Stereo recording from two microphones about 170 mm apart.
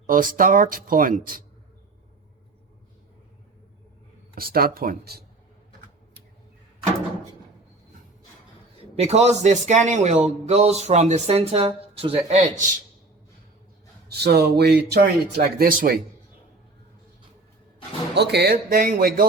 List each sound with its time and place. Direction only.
0.1 s speech: 55° right (ahead or behind)
4.4 s speech: 60° right (ahead or behind)
9.0 s speech: 40° right (ahead or behind)
14.1 s speech: 70° right (ahead or behind)
18.1 s speech: 75° right (ahead or behind); by 19.2 s 60° right (ahead or behind)